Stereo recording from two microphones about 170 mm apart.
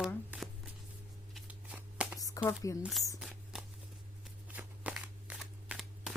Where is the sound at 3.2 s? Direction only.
Centre (ahead or behind).